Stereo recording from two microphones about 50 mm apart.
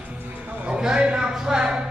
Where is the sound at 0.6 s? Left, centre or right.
Centre.